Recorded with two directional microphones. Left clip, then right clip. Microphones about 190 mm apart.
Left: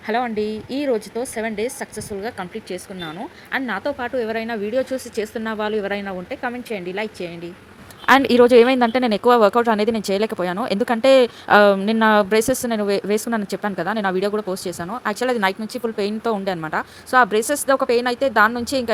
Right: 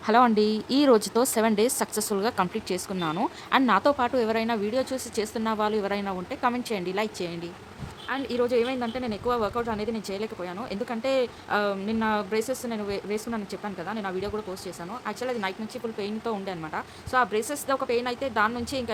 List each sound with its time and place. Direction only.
0.1 s a woman's voice: 10° right (ahead or behind)
8.0 s a woman's voice: 55° left (ahead or behind); by 18.9 s 35° left (ahead or behind)